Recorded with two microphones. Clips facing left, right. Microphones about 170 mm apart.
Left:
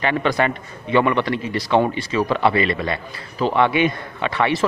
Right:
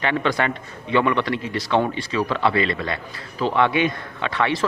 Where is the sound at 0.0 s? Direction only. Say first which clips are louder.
Left 2 dB; 5° left (ahead or behind).